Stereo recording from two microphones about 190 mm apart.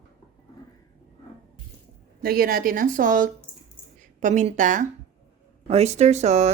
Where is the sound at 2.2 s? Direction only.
50° right (ahead or behind).